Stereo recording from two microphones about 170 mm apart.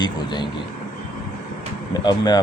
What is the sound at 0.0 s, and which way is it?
Speech, 25° left (ahead or behind).